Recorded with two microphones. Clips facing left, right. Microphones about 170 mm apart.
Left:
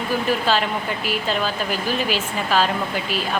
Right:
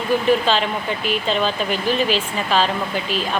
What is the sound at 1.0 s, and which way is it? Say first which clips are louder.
Speech: right 4 dB; 5° left (ahead or behind).